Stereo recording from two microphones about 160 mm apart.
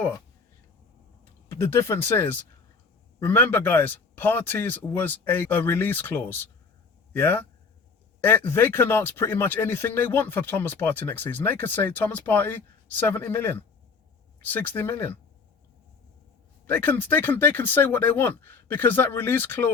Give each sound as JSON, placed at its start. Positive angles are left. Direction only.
{"t": 1.2, "sound": "speech", "side_deg": 15}
{"t": 16.6, "sound": "speech", "side_deg": 10}